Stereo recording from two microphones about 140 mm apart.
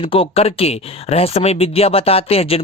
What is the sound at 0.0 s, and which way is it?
Speech, 40° left (ahead or behind).